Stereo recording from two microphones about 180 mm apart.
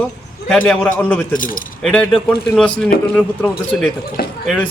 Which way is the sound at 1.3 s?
50° left (ahead or behind).